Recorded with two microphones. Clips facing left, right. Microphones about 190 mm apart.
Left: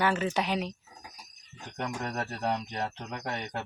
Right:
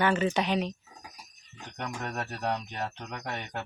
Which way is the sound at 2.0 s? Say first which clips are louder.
Right 1 dB; centre (ahead or behind).